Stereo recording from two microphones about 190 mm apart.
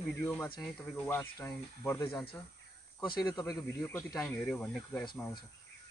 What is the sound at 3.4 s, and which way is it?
Speech, 15° left (ahead or behind).